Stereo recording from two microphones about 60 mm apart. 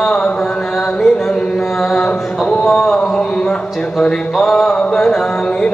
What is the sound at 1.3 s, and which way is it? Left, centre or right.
Carnatic music, centre.